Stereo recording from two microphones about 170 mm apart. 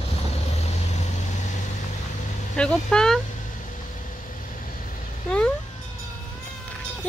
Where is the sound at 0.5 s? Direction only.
40° left (ahead or behind).